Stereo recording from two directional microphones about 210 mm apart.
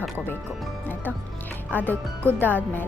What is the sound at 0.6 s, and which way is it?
Speech, 10° left (ahead or behind).